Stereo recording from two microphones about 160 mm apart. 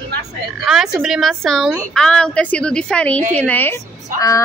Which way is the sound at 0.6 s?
Centre (ahead or behind).